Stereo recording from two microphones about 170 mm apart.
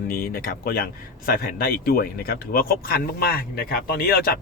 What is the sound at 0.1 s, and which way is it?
Speech, 60° left (ahead or behind).